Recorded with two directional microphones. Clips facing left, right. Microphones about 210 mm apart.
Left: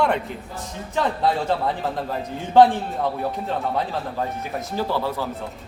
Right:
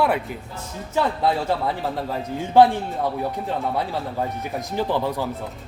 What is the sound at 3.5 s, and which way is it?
A man's voice, 15° right (ahead or behind).